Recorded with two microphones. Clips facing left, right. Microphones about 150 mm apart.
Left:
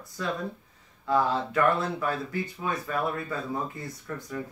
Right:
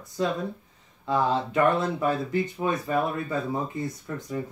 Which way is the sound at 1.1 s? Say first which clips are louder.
Right 1 dB; 20° right (ahead or behind).